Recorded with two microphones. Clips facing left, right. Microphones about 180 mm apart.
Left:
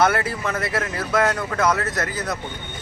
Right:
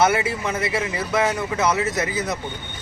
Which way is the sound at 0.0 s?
Centre (ahead or behind).